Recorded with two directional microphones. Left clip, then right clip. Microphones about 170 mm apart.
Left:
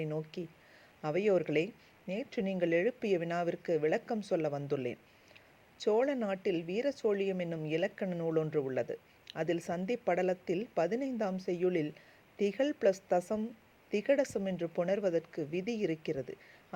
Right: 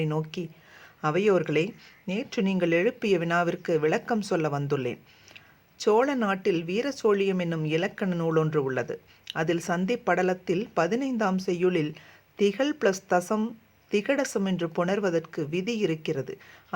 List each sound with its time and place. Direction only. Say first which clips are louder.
0.0 s speech: right 8 dB; 20° left (ahead or behind)